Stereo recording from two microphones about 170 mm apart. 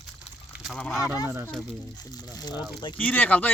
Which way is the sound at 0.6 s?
Centre (ahead or behind).